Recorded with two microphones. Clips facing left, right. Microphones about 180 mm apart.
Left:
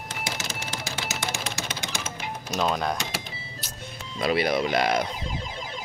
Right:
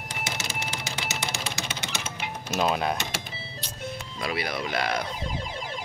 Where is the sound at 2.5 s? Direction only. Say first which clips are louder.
Right 1 dB; 5° right (ahead or behind).